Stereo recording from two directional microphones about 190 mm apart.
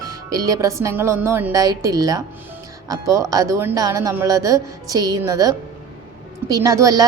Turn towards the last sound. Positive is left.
turn(degrees=-15)  # may be behind; listen again after turning